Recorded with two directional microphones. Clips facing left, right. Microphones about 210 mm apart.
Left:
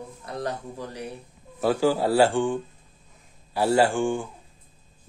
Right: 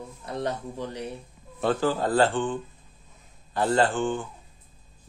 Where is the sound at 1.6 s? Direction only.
10° left (ahead or behind).